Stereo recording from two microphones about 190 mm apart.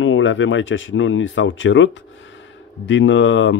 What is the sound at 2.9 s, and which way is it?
Speech, 75° left (ahead or behind).